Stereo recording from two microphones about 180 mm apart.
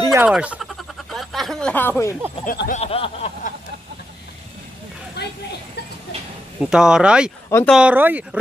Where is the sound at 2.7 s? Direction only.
35° left (ahead or behind).